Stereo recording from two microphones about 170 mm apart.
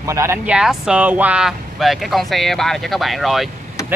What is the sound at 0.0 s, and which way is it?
Speech, 15° right (ahead or behind).